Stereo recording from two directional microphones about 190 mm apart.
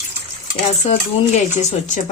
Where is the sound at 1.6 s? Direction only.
40° left (ahead or behind).